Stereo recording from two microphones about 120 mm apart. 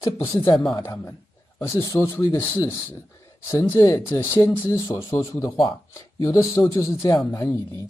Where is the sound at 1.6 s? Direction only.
25° left (ahead or behind).